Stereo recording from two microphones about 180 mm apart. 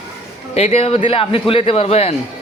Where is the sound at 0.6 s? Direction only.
35° left (ahead or behind).